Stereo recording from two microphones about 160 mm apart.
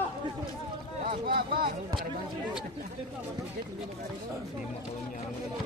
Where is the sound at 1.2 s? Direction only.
70° right (ahead or behind).